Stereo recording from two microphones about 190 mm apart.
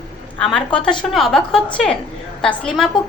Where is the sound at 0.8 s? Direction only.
25° left (ahead or behind).